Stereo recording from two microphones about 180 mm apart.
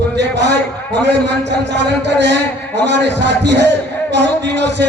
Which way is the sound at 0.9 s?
75° right (ahead or behind).